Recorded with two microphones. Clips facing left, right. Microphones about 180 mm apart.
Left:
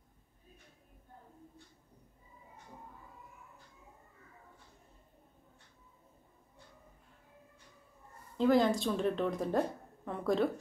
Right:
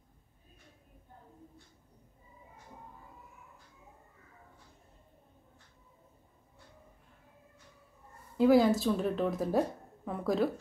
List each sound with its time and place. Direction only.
8.4 s a woman's voice: 5° right (ahead or behind)